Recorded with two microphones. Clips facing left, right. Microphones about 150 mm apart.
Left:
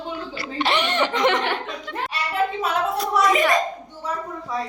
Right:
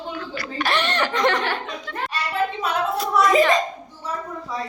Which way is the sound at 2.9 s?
Centre (ahead or behind).